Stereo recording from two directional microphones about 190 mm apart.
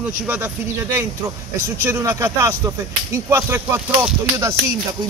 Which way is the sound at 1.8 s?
15° right (ahead or behind).